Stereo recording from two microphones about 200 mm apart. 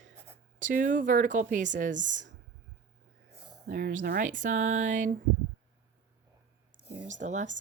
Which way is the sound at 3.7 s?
45° right (ahead or behind).